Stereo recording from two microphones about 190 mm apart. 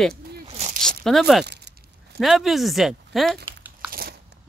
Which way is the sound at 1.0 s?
Centre (ahead or behind).